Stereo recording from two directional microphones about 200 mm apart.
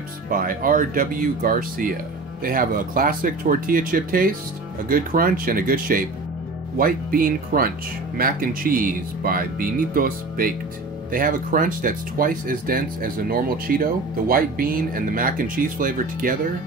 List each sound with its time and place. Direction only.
0.3 s speech: 45° right (ahead or behind)